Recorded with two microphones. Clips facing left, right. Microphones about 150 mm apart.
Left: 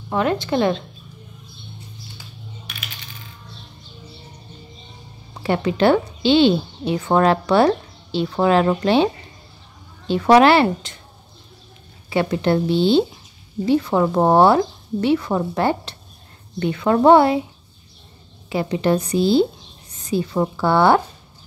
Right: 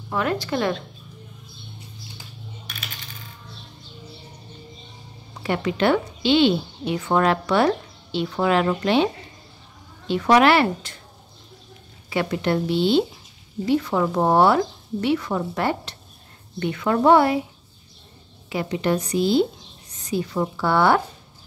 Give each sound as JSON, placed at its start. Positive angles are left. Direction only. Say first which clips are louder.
{"t": 0.1, "sound": "a woman's voice", "louder": "left 4 dB", "side_deg": 25}
{"t": 5.4, "sound": "a woman's voice", "louder": "left 4 dB", "side_deg": 30}
{"t": 12.1, "sound": "a woman's voice", "louder": "left 4 dB", "side_deg": 30}
{"t": 18.5, "sound": "a woman's voice", "louder": "left 4 dB", "side_deg": 30}